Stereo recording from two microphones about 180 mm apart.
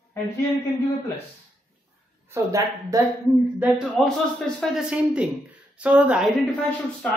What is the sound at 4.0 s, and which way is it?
A woman's voice, centre (ahead or behind).